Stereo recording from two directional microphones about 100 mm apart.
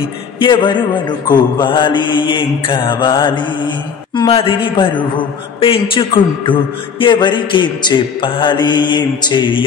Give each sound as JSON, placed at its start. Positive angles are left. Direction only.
{"t": 0.4, "sound": "a man's voice", "side_deg": 55}
{"t": 4.3, "sound": "a man's voice", "side_deg": 60}